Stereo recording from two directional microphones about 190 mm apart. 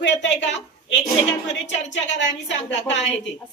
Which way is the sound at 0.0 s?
70° left (ahead or behind).